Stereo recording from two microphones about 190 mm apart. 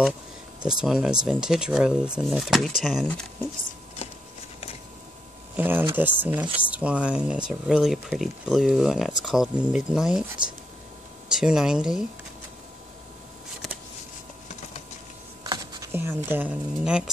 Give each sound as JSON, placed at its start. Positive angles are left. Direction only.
{"t": 0.7, "sound": "speech", "side_deg": 0}
{"t": 5.6, "sound": "speech", "side_deg": -10}
{"t": 11.3, "sound": "speech", "side_deg": -5}
{"t": 15.4, "sound": "computer keyboard", "side_deg": -20}
{"t": 16.3, "sound": "speech", "side_deg": -10}